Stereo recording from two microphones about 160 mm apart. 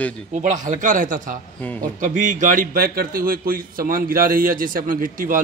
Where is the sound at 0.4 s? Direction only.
50° right (ahead or behind).